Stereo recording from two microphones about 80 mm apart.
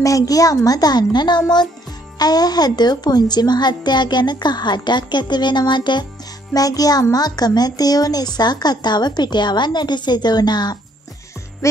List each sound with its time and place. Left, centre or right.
0.0 s a woman's voice: left
6.5 s a child's voice: left
11.6 s music: left